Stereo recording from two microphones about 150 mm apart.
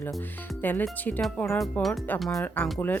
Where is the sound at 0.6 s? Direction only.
10° left (ahead or behind).